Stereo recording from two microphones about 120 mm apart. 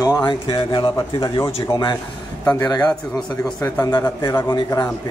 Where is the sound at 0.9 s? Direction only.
30° left (ahead or behind).